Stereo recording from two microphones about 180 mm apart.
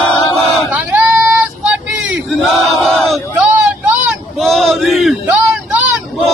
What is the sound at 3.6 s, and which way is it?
Vehicle, 5° right (ahead or behind).